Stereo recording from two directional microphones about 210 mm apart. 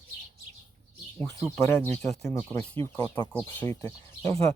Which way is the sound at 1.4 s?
15° left (ahead or behind).